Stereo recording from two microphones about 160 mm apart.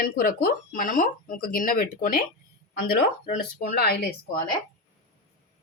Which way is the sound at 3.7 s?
75° left (ahead or behind).